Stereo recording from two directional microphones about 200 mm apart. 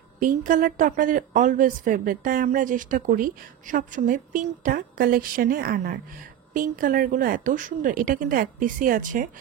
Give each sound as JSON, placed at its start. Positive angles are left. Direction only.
{"t": 0.2, "sound": "a woman's voice", "side_deg": -40}